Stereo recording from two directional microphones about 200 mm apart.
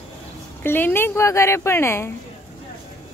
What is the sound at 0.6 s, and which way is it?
Speech, 10° left (ahead or behind).